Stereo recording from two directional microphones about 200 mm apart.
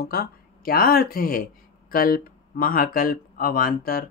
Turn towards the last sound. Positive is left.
turn(degrees=45)  # may be behind; listen again after turning